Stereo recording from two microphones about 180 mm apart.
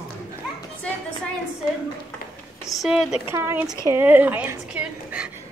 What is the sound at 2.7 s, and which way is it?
Speech, centre (ahead or behind).